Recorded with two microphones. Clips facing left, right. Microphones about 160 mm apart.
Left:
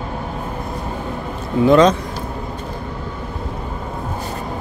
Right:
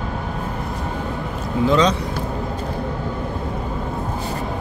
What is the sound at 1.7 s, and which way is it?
Speech, 50° left (ahead or behind).